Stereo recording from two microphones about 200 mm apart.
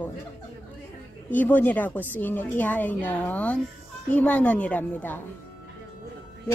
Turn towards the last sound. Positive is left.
turn(degrees=10)  # may be behind; listen again after turning